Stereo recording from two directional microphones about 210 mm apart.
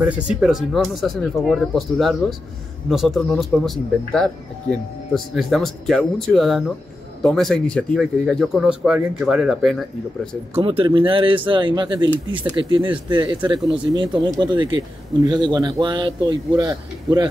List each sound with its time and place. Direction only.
0.0 s speech: 5° right (ahead or behind)
10.6 s speech: 25° right (ahead or behind)